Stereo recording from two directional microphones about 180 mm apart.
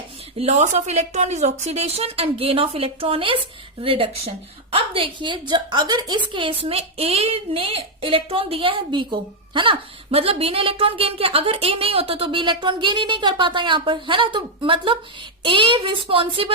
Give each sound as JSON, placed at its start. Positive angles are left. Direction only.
{"t": 0.3, "sound": "a woman's voice", "side_deg": -35}